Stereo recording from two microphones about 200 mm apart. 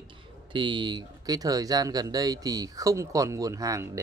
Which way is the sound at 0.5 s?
25° right (ahead or behind).